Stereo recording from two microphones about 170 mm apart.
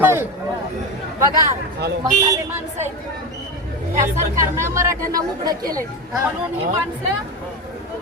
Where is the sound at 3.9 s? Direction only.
15° right (ahead or behind).